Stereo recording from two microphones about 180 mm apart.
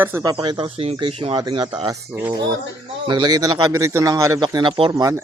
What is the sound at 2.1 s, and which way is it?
Speech, 10° right (ahead or behind).